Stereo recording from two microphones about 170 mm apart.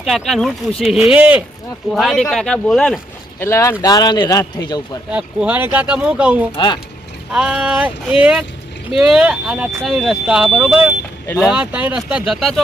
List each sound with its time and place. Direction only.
0.0 s speech: centre (ahead or behind)
3.4 s speech: 15° left (ahead or behind)
5.1 s speech: 5° right (ahead or behind)